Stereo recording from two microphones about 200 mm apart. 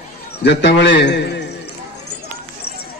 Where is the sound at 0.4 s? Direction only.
55° left (ahead or behind).